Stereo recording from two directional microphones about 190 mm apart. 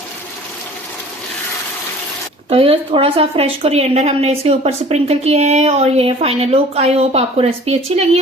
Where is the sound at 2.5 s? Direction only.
30° right (ahead or behind).